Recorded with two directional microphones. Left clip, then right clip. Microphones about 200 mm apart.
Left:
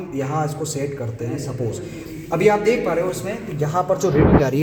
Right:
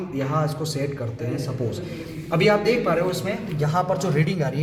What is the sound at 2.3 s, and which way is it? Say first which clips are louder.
Speech: left 3 dB; 40° left (ahead or behind).